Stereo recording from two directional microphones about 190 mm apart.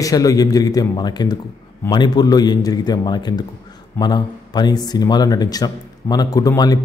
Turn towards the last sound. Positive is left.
turn(degrees=20)  # may be behind; listen again after turning